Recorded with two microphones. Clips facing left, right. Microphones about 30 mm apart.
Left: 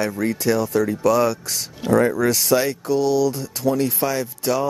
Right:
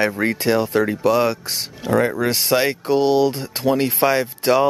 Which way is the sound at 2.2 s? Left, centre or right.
Right.